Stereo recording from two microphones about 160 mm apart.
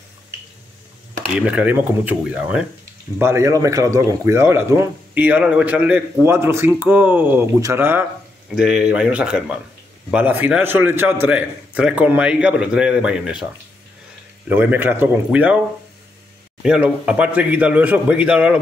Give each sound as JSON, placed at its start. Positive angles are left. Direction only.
{"t": 1.3, "sound": "speech", "side_deg": -5}
{"t": 14.5, "sound": "speech", "side_deg": -10}
{"t": 16.6, "sound": "speech", "side_deg": -5}